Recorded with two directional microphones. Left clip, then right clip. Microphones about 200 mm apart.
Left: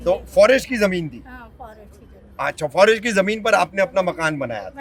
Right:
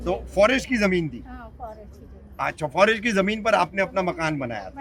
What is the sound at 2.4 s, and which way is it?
A man's voice, 45° left (ahead or behind).